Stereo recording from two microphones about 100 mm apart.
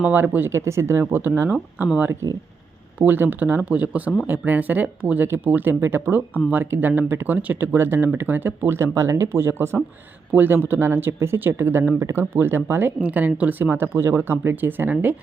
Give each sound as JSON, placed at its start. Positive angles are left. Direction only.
{"t": 0.0, "sound": "speech", "side_deg": -20}
{"t": 3.0, "sound": "speech", "side_deg": -20}